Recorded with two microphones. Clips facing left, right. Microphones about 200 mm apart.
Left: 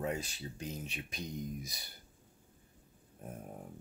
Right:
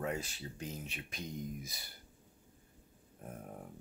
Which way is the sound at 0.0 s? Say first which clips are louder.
Left 1 dB; 15° left (ahead or behind).